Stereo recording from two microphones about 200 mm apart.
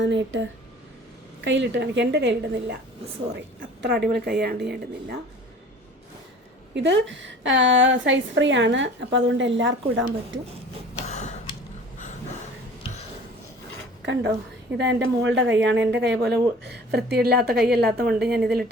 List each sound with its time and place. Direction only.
0.0 s speech: 65° right (ahead or behind)
1.5 s speech: 60° right (ahead or behind)
3.8 s a woman's voice: 55° right (ahead or behind)
6.7 s a woman's voice: 65° right (ahead or behind)
11.0 s a sound: 35° left (ahead or behind)
14.0 s a woman's voice: 60° right (ahead or behind)